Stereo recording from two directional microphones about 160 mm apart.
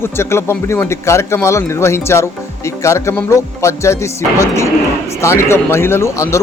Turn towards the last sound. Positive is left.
turn(degrees=15)  # may be behind; listen again after turning